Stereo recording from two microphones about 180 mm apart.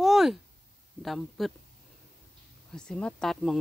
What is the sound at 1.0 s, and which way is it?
Speech, centre (ahead or behind).